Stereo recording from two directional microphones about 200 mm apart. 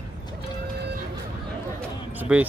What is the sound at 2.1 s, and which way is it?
Speech, 5° right (ahead or behind).